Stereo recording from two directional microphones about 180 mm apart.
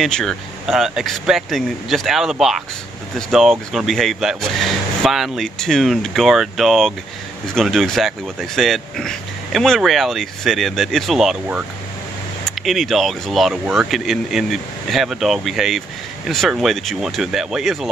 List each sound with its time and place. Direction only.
0.0 s speech: centre (ahead or behind)